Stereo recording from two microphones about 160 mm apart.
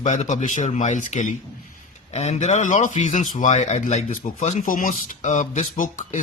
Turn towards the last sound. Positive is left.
turn(degrees=55)  # may be behind; listen again after turning